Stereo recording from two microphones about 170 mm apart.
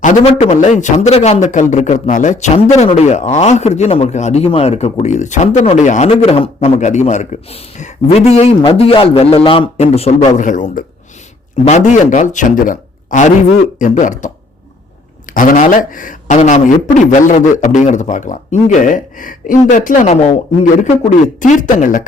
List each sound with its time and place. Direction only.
0.0 s a man's voice: 40° left (ahead or behind)
15.4 s a man's voice: 50° left (ahead or behind)
21.4 s a man's voice: 50° left (ahead or behind)